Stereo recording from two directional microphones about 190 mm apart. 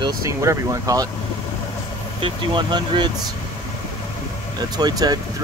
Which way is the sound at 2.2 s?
25° right (ahead or behind).